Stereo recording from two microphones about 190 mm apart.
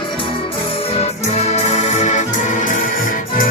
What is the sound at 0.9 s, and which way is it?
Music, 35° left (ahead or behind).